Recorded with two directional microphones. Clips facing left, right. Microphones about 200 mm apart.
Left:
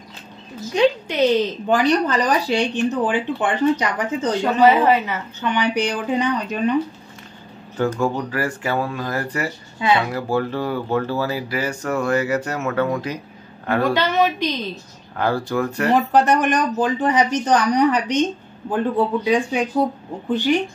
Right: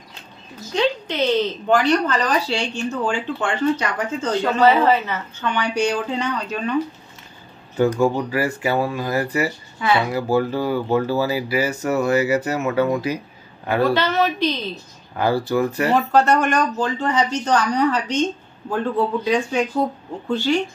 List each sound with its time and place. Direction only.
0.7 s speech: 15° left (ahead or behind)
7.7 s speech: 10° right (ahead or behind)
9.8 s speech: 20° left (ahead or behind)
10.1 s speech: 5° right (ahead or behind)
13.8 s speech: 15° left (ahead or behind)
15.1 s speech: 5° right (ahead or behind)
15.9 s speech: 15° left (ahead or behind)
19.2 s speech: 15° left (ahead or behind)